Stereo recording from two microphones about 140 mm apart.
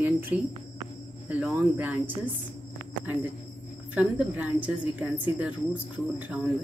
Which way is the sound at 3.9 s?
10° right (ahead or behind).